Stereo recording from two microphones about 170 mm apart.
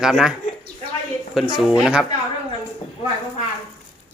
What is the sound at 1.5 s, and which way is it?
Speech, centre (ahead or behind).